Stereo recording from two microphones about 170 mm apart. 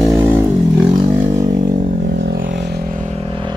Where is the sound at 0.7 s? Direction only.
20° right (ahead or behind).